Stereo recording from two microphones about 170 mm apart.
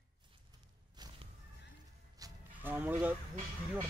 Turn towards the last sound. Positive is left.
turn(degrees=-10)  # may be behind; listen again after turning